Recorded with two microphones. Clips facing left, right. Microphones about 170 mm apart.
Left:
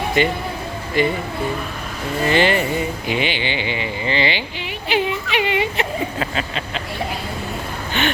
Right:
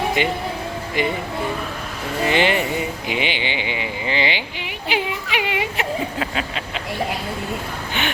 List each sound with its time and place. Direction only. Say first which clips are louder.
0.2 s speech: left 2 dB; 15° right (ahead or behind)
2.2 s speech: left 2 dB; 15° right (ahead or behind)